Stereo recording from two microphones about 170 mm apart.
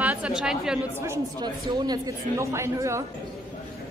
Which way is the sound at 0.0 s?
10° right (ahead or behind).